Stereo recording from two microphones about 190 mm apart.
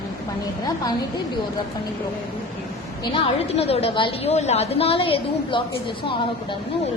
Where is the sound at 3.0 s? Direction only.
25° left (ahead or behind).